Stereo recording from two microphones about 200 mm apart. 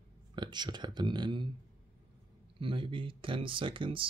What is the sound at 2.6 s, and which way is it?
Speech, 25° right (ahead or behind).